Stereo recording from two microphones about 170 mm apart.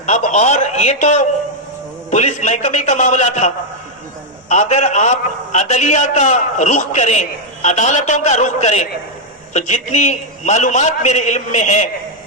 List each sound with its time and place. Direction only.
0.0 s a man's voice: 45° left (ahead or behind)